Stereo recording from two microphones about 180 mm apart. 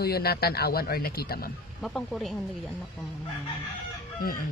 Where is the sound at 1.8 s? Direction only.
Centre (ahead or behind).